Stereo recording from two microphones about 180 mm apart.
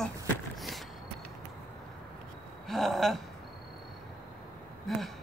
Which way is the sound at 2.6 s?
Centre (ahead or behind).